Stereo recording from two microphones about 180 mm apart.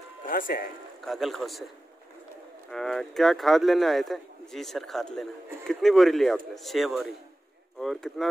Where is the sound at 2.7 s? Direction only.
Centre (ahead or behind).